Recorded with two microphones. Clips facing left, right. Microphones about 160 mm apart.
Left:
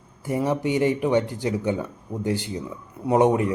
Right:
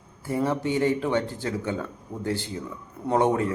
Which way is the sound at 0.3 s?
20° left (ahead or behind).